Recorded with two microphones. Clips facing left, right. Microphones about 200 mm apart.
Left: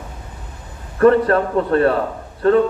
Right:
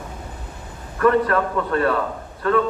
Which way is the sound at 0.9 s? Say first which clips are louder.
Left 5 dB; 35° left (ahead or behind).